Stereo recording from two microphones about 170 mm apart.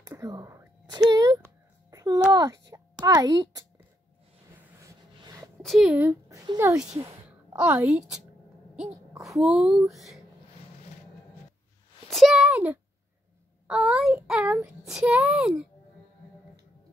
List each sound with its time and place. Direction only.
0.0 s speech: 20° right (ahead or behind)
1.9 s a sound: 20° right (ahead or behind)
2.3 s a child's voice: 20° right (ahead or behind)
4.7 s a sound: 20° right (ahead or behind)
5.6 s speech: centre (ahead or behind); by 6.8 s 20° right (ahead or behind)
7.0 s a woman's voice: 10° right (ahead or behind)
9.2 s a child's voice: 5° right (ahead or behind)
12.1 s a child's voice: centre (ahead or behind)